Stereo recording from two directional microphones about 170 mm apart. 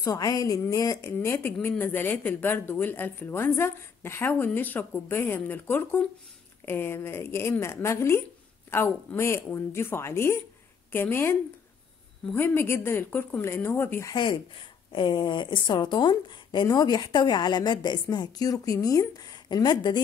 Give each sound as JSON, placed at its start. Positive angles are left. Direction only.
{"t": 0.0, "sound": "a woman's voice", "side_deg": 20}
{"t": 14.1, "sound": "a woman's voice", "side_deg": 30}